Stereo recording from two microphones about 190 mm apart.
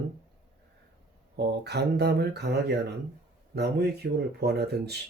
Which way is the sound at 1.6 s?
60° right (ahead or behind).